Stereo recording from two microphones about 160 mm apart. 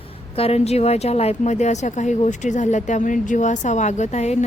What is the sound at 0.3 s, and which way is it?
Speech, 40° left (ahead or behind).